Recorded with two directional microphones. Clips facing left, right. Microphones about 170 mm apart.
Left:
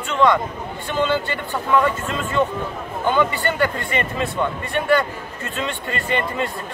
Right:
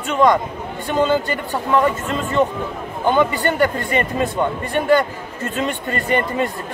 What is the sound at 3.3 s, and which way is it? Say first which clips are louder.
Speech: right 3 dB; 40° right (ahead or behind).